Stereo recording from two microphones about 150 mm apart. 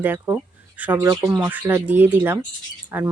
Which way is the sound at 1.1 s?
25° right (ahead or behind).